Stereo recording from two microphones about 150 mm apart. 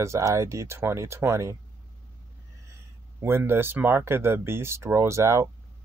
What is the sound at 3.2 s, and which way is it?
Speech, 15° right (ahead or behind).